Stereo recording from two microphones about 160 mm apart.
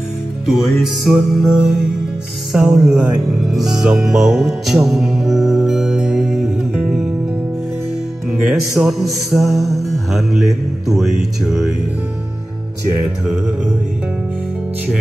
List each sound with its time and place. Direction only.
0.5 s music: centre (ahead or behind)
8.3 s music: 5° right (ahead or behind)